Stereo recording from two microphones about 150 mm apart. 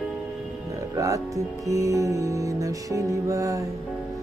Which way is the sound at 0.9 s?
20° right (ahead or behind).